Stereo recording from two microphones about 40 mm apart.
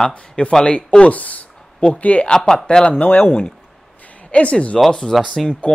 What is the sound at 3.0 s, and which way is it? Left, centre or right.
Speech, left.